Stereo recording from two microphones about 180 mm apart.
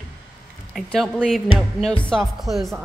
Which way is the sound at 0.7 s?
Centre (ahead or behind).